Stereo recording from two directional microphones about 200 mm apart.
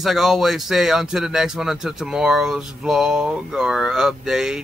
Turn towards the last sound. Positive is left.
turn(degrees=-5)  # may be behind; listen again after turning